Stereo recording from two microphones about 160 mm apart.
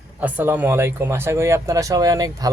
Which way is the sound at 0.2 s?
10° right (ahead or behind).